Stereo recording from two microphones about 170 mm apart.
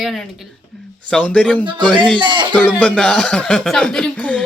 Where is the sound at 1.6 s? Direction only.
25° right (ahead or behind).